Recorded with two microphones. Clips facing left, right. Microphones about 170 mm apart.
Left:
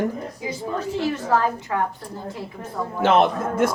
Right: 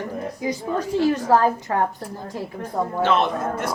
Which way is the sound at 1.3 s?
45° right (ahead or behind).